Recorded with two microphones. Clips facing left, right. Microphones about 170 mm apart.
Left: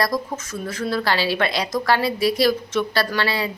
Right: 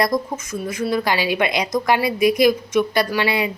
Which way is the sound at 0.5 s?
10° right (ahead or behind).